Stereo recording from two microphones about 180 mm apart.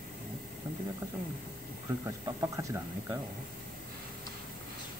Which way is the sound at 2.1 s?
20° right (ahead or behind).